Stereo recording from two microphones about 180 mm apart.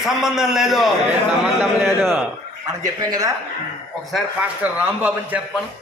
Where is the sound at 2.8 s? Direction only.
20° right (ahead or behind).